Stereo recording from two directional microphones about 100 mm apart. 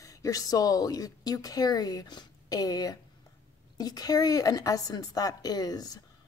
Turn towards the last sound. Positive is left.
turn(degrees=40)  # may be behind; listen again after turning